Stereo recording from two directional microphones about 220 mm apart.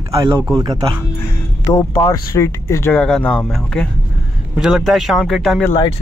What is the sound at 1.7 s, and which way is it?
Speech, 15° left (ahead or behind).